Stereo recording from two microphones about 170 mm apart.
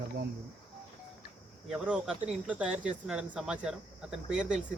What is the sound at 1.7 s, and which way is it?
Speech, 5° right (ahead or behind).